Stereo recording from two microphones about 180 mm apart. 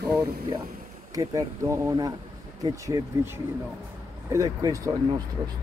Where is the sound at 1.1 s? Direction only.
20° right (ahead or behind).